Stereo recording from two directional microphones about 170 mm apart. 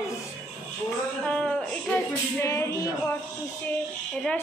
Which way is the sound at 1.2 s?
5° left (ahead or behind).